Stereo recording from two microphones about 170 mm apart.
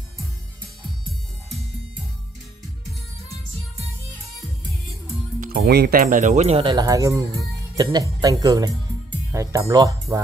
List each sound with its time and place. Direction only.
5.4 s speech: 65° right (ahead or behind); by 6.7 s 35° right (ahead or behind)
6.7 s speech: 20° right (ahead or behind)